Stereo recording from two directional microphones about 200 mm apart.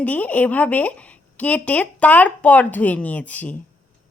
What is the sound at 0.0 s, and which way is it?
A woman's voice, 10° left (ahead or behind).